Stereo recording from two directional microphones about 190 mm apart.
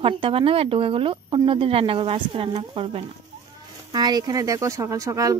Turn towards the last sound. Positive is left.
turn(degrees=-15)  # may be behind; listen again after turning